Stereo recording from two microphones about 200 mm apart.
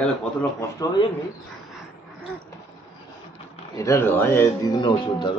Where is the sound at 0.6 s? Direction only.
15° left (ahead or behind).